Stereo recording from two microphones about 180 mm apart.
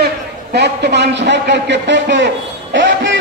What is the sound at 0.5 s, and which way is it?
A man's voice, 70° right (ahead or behind).